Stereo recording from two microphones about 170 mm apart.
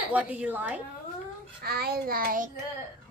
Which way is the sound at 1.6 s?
65° right (ahead or behind).